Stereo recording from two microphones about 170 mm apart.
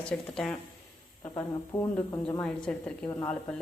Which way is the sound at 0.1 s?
5° left (ahead or behind).